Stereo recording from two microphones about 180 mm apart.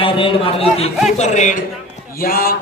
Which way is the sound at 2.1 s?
55° left (ahead or behind).